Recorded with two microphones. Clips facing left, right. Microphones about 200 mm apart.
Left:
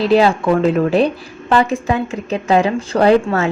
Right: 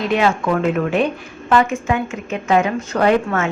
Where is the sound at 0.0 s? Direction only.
35° left (ahead or behind).